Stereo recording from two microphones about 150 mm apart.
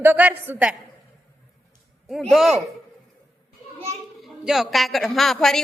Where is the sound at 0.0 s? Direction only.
10° right (ahead or behind).